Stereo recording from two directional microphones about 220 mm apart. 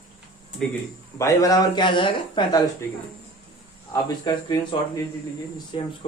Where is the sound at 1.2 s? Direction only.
15° left (ahead or behind).